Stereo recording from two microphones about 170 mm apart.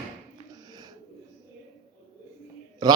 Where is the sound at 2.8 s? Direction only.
25° right (ahead or behind).